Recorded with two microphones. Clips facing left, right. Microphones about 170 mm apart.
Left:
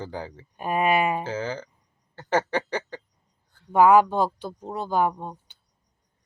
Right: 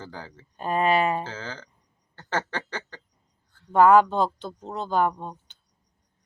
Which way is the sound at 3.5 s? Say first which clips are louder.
Even; 10° left (ahead or behind).